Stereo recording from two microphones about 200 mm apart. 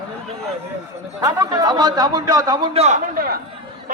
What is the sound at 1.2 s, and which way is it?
A man's voice, 20° right (ahead or behind).